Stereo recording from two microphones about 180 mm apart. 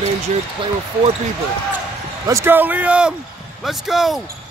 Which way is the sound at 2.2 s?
15° right (ahead or behind).